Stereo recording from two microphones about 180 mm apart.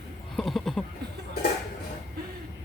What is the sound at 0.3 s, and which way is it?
Speech, centre (ahead or behind).